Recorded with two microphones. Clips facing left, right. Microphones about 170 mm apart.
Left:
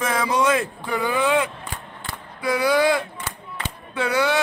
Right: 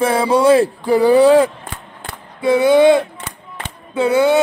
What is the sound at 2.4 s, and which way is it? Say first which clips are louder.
Speech: right 9 dB; 25° right (ahead or behind).